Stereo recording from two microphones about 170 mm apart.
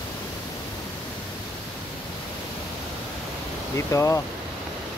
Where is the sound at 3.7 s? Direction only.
15° left (ahead or behind).